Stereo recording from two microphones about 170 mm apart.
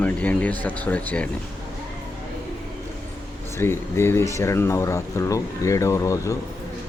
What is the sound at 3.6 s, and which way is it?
Speech, 15° left (ahead or behind).